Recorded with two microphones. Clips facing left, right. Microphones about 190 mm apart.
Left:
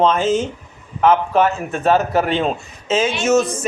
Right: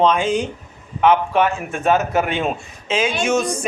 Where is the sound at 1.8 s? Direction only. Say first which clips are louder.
Left 2 dB; centre (ahead or behind).